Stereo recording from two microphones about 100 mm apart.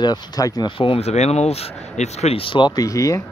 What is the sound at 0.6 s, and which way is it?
Speech, 60° left (ahead or behind).